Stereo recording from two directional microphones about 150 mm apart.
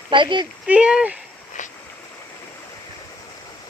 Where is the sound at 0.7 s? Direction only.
5° right (ahead or behind).